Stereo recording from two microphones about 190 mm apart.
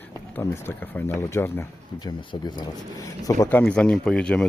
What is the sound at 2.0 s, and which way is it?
Speech, 20° left (ahead or behind).